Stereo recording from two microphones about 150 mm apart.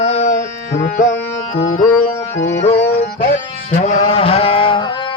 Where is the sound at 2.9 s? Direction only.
90° left.